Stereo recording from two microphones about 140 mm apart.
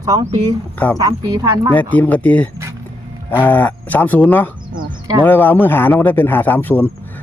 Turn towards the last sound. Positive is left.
turn(degrees=15)  # may be behind; listen again after turning